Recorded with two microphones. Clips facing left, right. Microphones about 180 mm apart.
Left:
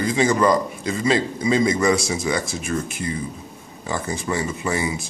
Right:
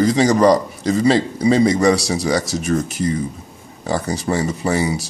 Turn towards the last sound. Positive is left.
turn(degrees=-35)  # may be behind; listen again after turning